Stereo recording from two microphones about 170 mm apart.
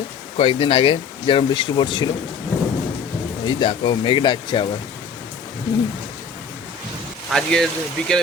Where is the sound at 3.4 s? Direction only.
30° left (ahead or behind).